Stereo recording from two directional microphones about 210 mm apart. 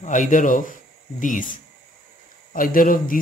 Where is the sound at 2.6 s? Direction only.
40° left (ahead or behind).